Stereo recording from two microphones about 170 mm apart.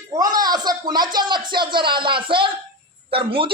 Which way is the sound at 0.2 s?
25° right (ahead or behind).